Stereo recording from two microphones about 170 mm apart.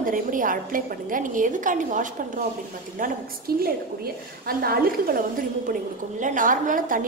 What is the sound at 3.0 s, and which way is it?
A woman's voice, 60° right (ahead or behind).